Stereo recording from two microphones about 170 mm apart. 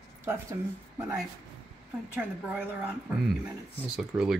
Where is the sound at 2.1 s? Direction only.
10° right (ahead or behind).